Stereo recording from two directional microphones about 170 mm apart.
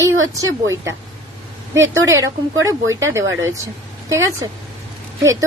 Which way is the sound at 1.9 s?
20° right (ahead or behind).